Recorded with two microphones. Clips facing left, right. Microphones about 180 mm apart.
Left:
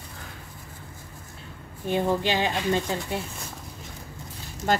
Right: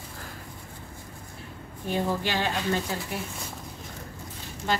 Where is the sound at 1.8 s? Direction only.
20° left (ahead or behind).